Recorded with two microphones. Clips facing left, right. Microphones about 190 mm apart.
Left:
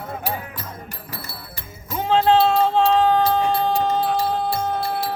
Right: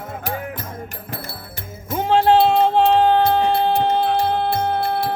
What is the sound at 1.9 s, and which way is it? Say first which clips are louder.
Music: right 2 dB; 55° right (ahead or behind).